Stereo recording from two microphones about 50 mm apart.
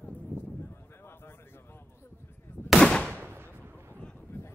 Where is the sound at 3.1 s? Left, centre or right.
Right.